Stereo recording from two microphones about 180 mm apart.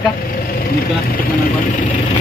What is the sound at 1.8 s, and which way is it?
Vehicle, 40° left (ahead or behind).